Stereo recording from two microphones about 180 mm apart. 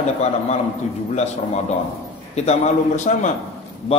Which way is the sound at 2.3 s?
40° left (ahead or behind).